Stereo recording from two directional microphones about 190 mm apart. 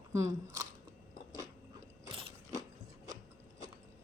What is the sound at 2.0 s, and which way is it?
Mechanisms, 30° right (ahead or behind).